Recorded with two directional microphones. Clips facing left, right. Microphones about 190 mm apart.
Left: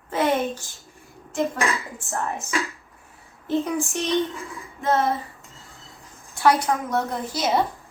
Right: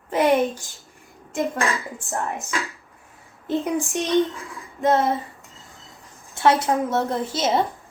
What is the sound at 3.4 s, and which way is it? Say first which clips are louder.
Speech: even; 15° right (ahead or behind).